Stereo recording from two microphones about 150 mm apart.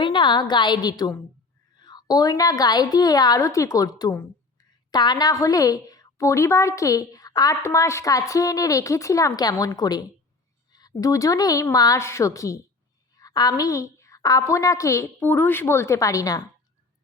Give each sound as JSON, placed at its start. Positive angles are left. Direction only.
{"t": 0.0, "sound": "a woman's voice", "side_deg": 30}